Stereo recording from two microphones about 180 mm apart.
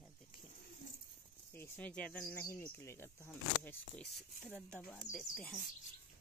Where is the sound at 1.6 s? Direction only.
10° left (ahead or behind).